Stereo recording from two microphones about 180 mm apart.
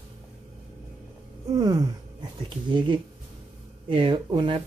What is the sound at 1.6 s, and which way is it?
Speech, 20° right (ahead or behind).